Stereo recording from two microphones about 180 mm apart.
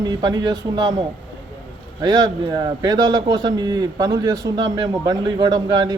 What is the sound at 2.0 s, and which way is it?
A man's voice, 25° right (ahead or behind).